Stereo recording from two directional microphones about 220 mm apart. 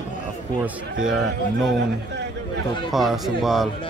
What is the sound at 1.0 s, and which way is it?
Speech, centre (ahead or behind).